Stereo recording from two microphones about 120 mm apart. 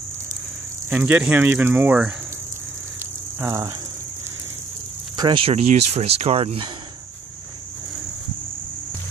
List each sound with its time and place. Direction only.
0.8 s speech: 15° right (ahead or behind)
3.3 s speech: 25° right (ahead or behind)
5.1 s speech: 40° right (ahead or behind)